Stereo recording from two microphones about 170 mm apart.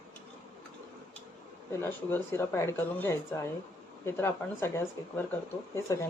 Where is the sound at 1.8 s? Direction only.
15° left (ahead or behind).